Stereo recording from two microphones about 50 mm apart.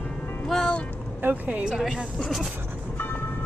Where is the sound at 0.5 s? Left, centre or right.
Centre.